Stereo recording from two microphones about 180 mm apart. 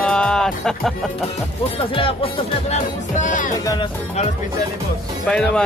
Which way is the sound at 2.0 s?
30° left (ahead or behind).